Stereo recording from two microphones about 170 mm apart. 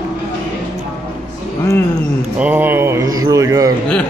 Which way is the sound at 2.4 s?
10° right (ahead or behind).